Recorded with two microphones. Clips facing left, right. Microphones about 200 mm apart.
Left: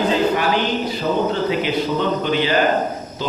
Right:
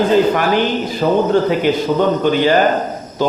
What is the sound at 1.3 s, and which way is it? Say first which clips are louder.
Speech: right 6 dB; 50° right (ahead or behind).